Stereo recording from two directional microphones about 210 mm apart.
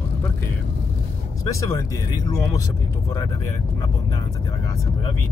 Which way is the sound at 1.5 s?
15° left (ahead or behind).